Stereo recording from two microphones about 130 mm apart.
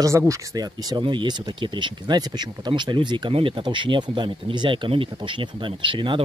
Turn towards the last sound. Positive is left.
turn(degrees=-40)  # may be behind; listen again after turning